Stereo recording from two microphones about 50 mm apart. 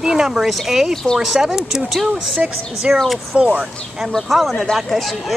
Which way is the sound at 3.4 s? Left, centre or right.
Right.